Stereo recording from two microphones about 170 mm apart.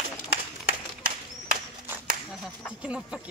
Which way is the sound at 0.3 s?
60° right (ahead or behind).